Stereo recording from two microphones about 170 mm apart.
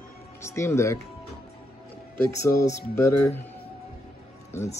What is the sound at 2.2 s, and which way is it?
Speech, 20° left (ahead or behind).